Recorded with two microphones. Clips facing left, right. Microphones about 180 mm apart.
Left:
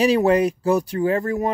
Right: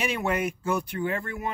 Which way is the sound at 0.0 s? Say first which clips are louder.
Left 11 dB; 35° left (ahead or behind).